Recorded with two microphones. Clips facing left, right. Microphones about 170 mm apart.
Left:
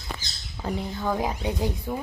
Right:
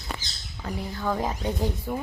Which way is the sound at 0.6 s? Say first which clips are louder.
Left 4 dB; 30° left (ahead or behind).